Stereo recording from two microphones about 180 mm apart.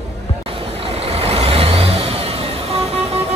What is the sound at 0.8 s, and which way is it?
Vehicle, 35° right (ahead or behind).